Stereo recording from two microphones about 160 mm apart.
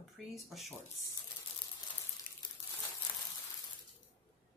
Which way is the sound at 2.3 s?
65° left (ahead or behind).